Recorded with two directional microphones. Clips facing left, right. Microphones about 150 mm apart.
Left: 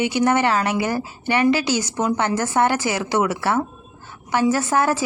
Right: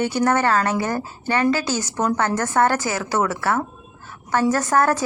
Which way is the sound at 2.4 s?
10° left (ahead or behind).